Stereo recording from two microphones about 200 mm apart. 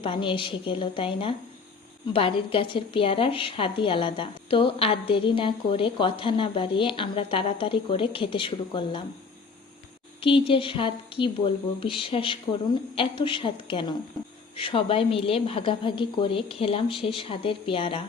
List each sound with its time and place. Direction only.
0.0 s a woman's voice: 25° left (ahead or behind)
10.2 s a woman's voice: 25° left (ahead or behind)